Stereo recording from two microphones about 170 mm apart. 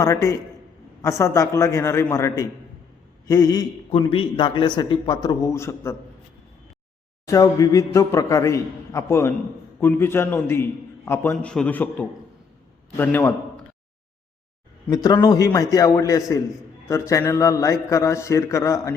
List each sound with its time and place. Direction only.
0.0 s a man's voice: 20° left (ahead or behind)
7.3 s a man's voice: 20° left (ahead or behind)
14.8 s a man's voice: 25° left (ahead or behind)